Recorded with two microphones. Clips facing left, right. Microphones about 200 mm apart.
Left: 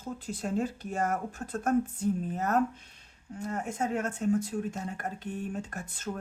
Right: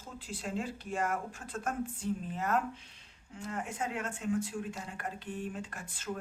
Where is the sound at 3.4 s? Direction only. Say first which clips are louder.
Left 5 dB; 40° left (ahead or behind).